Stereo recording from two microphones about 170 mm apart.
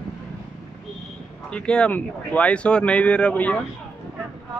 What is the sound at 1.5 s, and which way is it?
Speech, 5° left (ahead or behind).